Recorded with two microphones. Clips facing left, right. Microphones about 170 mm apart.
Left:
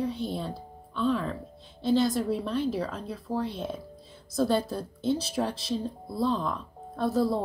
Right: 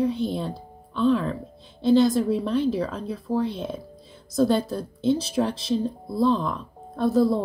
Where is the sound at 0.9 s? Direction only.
65° right (ahead or behind).